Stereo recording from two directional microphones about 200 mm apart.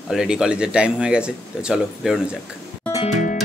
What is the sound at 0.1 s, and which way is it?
Speech, 5° right (ahead or behind).